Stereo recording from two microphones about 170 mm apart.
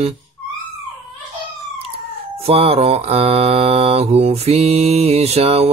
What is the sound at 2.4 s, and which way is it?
Mantra, 35° right (ahead or behind).